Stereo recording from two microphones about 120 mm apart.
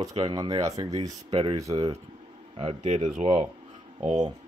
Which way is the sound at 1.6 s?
30° right (ahead or behind).